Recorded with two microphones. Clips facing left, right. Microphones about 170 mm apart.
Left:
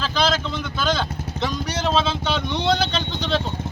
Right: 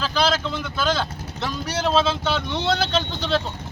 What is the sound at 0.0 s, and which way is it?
Speech, 5° right (ahead or behind).